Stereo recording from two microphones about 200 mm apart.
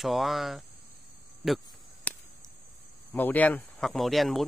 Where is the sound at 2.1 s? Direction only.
5° left (ahead or behind).